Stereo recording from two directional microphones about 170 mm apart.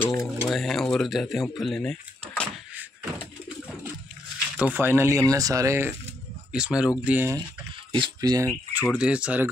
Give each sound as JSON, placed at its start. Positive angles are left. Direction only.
{"t": 0.0, "sound": "a sound", "side_deg": 20}
{"t": 0.5, "sound": "speech", "side_deg": 0}
{"t": 4.6, "sound": "speech", "side_deg": -10}
{"t": 7.9, "sound": "speech", "side_deg": -25}
{"t": 8.9, "sound": "speech", "side_deg": -5}